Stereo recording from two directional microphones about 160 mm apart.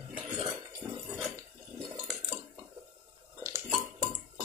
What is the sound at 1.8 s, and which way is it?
Water, 25° right (ahead or behind).